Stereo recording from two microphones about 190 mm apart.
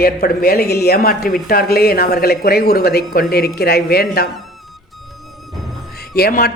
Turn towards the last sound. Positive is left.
turn(degrees=50)  # may be behind; listen again after turning